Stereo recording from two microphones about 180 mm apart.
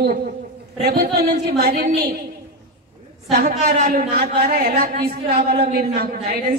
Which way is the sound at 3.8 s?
60° right (ahead or behind).